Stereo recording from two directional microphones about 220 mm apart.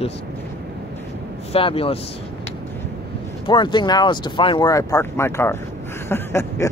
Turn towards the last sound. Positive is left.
turn(degrees=10)  # may be behind; listen again after turning